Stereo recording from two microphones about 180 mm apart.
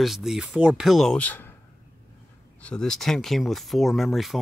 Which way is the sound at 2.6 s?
5° left (ahead or behind).